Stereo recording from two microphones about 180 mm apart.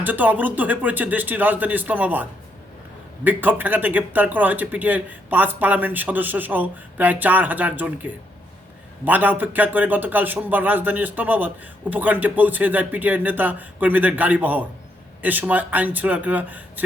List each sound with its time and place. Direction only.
0.0 s speech: 10° right (ahead or behind)
3.2 s speech: 10° right (ahead or behind)